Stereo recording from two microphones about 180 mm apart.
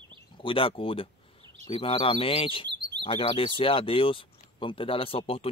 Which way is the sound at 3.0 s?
30° left (ahead or behind).